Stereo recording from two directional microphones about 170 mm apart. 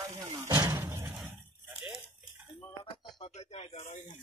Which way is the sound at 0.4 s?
20° right (ahead or behind).